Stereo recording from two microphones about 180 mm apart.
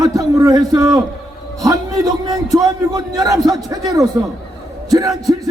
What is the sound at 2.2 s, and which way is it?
A man's voice, 20° right (ahead or behind).